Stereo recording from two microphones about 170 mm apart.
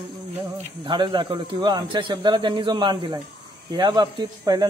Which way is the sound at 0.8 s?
25° right (ahead or behind).